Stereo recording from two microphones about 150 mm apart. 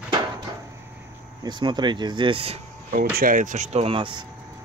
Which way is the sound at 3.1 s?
65° right (ahead or behind).